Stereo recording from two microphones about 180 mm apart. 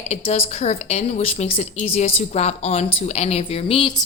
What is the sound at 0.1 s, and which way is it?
A woman's voice, 35° left (ahead or behind).